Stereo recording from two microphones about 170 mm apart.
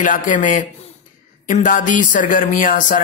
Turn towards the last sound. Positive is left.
turn(degrees=50)  # may be behind; listen again after turning